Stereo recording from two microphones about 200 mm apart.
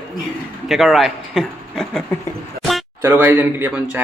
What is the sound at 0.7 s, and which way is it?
Speech, centre (ahead or behind).